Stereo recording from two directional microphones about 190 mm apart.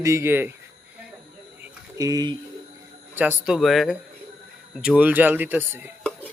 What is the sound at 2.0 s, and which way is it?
Speech, 20° right (ahead or behind).